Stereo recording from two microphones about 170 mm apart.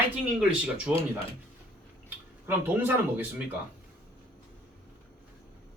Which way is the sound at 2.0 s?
10° right (ahead or behind).